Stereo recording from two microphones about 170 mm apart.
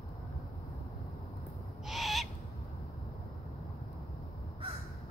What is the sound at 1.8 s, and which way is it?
Owl, centre (ahead or behind).